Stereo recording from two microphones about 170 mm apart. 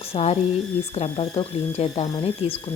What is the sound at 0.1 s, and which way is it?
A woman's voice, 35° left (ahead or behind).